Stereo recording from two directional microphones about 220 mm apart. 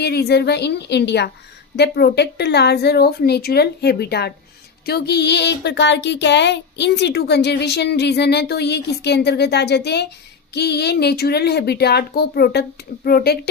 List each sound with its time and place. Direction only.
0.0 s speech: 45° left (ahead or behind)